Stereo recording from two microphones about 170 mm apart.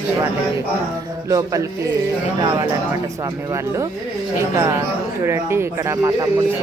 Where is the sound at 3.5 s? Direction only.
15° right (ahead or behind).